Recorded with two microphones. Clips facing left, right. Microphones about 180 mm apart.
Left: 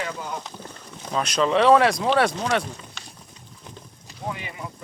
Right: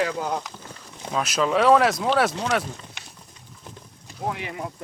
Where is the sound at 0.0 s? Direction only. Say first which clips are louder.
Right 6 dB; 70° right (ahead or behind).